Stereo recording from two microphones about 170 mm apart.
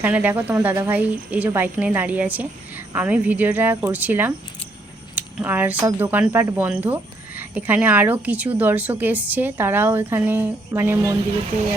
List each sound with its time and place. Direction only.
0.0 s speech: 10° right (ahead or behind)